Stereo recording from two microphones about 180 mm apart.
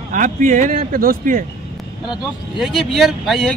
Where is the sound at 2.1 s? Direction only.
Centre (ahead or behind).